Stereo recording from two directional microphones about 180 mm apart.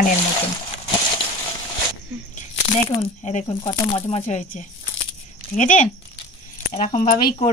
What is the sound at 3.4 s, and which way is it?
Speech, 25° left (ahead or behind).